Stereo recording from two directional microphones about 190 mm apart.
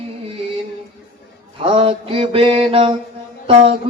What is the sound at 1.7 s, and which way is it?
Mantra, 30° right (ahead or behind).